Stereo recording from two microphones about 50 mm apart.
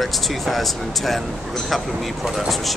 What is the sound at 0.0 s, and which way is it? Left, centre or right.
Speech, centre.